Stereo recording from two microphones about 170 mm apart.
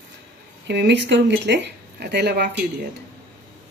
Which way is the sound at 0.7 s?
85° right.